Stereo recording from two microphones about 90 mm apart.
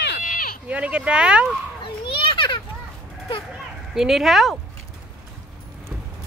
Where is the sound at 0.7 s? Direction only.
15° right (ahead or behind).